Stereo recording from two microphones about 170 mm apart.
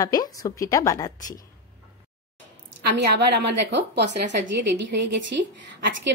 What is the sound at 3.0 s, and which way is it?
A woman's voice, 75° right (ahead or behind).